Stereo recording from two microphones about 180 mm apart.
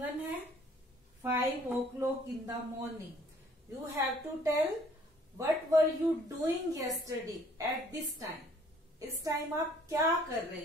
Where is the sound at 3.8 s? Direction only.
15° right (ahead or behind).